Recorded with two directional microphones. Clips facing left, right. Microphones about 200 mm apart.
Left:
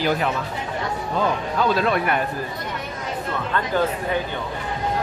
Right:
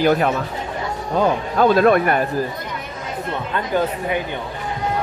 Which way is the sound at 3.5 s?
15° right (ahead or behind).